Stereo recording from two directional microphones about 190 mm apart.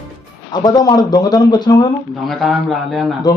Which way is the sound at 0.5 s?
20° left (ahead or behind).